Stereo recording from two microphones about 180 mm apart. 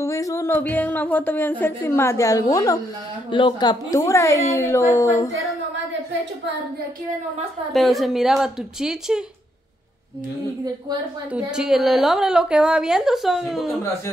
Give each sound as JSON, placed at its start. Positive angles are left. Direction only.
{"t": 0.0, "sound": "a woman's voice", "side_deg": 15}
{"t": 7.7, "sound": "a woman's voice", "side_deg": 0}
{"t": 11.3, "sound": "a woman's voice", "side_deg": -5}